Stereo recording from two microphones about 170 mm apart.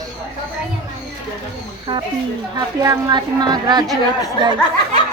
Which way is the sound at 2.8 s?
25° right (ahead or behind).